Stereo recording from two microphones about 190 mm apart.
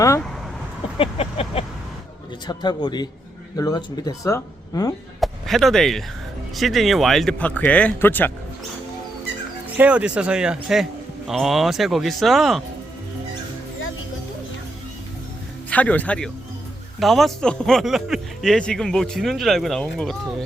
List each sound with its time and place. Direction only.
0.9 s a sound: 30° left (ahead or behind)
2.5 s speech: 20° left (ahead or behind)
5.2 s speech: centre (ahead or behind)
9.7 s speech: 5° right (ahead or behind)
15.7 s speech: 10° left (ahead or behind)